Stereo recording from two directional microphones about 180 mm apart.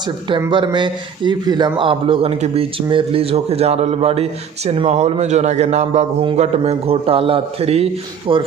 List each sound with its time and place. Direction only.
0.5 s a man's voice: 25° right (ahead or behind)